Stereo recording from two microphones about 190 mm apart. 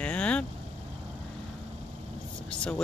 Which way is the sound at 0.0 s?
5° left (ahead or behind).